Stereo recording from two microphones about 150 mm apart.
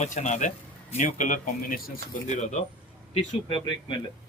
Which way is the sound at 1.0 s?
60° left (ahead or behind).